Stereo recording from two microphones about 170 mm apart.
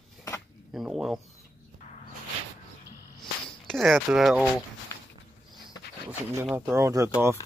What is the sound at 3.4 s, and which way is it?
Speech, centre (ahead or behind).